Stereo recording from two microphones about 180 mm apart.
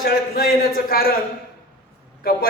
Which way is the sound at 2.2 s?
60° left (ahead or behind).